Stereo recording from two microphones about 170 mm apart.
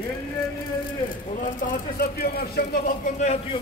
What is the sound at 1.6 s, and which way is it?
Speech, 55° left (ahead or behind).